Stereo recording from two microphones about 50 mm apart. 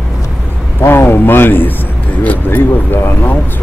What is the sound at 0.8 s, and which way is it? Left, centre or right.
Speech, left.